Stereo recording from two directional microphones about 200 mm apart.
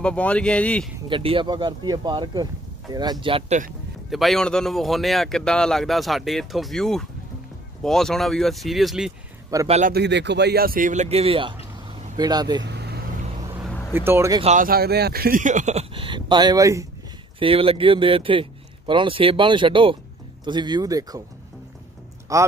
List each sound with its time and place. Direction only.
0.0 s a man's voice: 5° left (ahead or behind)
1.0 s speech: 25° right (ahead or behind)
4.1 s a man's voice: centre (ahead or behind)
9.7 s speech: 35° right (ahead or behind)
9.9 s speech: 60° right (ahead or behind); by 12.6 s 20° right (ahead or behind)
12.6 s vehicle: 55° right (ahead or behind)
13.7 s vehicle: 10° left (ahead or behind)
13.9 s speech: 10° right (ahead or behind)
14.4 s speech: 40° right (ahead or behind); by 16.8 s 15° right (ahead or behind)
17.4 s speech: 30° right (ahead or behind)
22.3 s speech: 15° right (ahead or behind)